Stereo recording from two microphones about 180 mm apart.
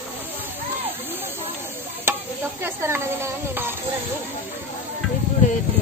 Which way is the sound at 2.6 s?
15° right (ahead or behind).